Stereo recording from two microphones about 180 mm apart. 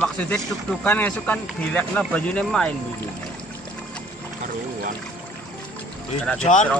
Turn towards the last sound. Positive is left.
turn(degrees=40)  # may be behind; listen again after turning